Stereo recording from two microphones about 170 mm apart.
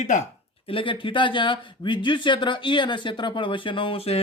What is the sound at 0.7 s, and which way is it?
Speech, 30° left (ahead or behind).